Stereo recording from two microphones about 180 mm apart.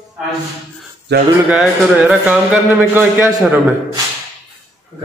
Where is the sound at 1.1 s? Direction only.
65° right (ahead or behind).